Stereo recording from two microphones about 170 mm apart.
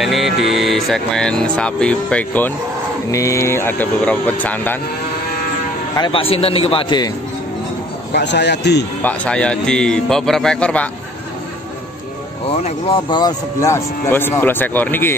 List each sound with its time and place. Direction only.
0.0 s speech: centre (ahead or behind)
5.9 s a man's voice: 30° left (ahead or behind)
8.1 s speech: 85° left
9.0 s speech: 5° left (ahead or behind)
12.6 s speech: 30° left (ahead or behind); by 15.1 s 10° left (ahead or behind)